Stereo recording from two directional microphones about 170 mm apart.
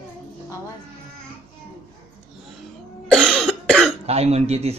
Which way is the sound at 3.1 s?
Centre (ahead or behind).